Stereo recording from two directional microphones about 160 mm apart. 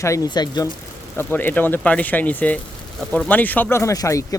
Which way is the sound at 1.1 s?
10° left (ahead or behind).